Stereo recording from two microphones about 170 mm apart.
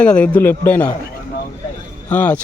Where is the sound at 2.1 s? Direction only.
10° left (ahead or behind).